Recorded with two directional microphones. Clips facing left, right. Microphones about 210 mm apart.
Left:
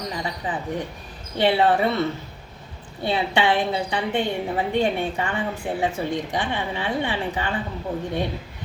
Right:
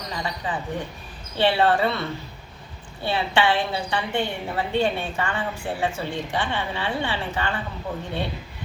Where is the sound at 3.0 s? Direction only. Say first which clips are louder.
Left 1 dB; 20° left (ahead or behind).